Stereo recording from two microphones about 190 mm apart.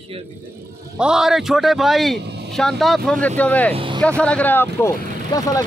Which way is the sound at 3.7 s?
25° right (ahead or behind).